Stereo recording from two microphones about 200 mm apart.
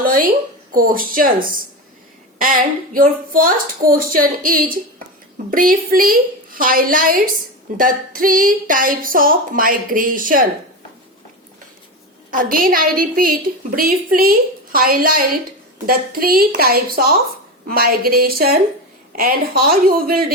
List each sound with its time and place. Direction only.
0.0 s a sound: 45° right (ahead or behind)
0.7 s a woman's voice: 45° right (ahead or behind)
12.3 s a woman's voice: 45° right (ahead or behind)